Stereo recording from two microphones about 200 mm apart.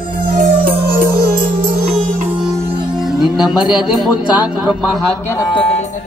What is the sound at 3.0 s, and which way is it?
Music, 5° right (ahead or behind).